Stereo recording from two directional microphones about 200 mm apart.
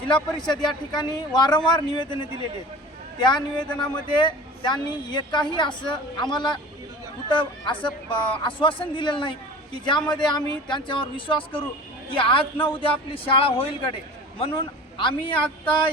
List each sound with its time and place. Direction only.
0.1 s a woman's voice: 20° left (ahead or behind)